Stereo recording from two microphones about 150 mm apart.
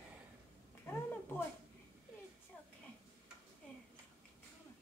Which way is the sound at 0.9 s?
15° left (ahead or behind).